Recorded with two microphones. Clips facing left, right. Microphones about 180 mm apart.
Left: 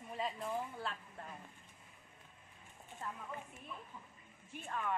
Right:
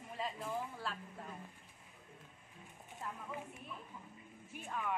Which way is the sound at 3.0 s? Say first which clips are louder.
Even; 5° right (ahead or behind).